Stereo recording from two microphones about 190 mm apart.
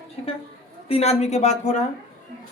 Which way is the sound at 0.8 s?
30° left (ahead or behind).